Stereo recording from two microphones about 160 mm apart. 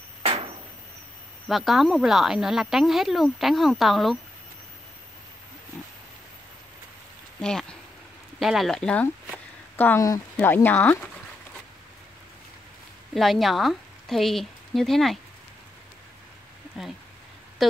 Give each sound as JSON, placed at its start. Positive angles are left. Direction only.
{"t": 1.5, "sound": "speech", "side_deg": 0}
{"t": 7.3, "sound": "speech", "side_deg": 5}
{"t": 13.1, "sound": "speech", "side_deg": 0}
{"t": 16.8, "sound": "speech", "side_deg": 0}